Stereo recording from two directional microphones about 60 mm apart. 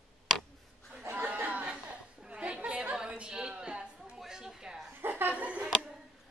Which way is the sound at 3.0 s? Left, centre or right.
Centre.